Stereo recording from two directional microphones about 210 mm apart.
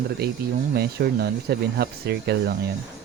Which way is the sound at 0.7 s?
50° right (ahead or behind).